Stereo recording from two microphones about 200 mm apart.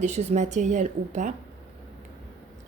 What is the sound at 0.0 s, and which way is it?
A woman's voice, 35° right (ahead or behind).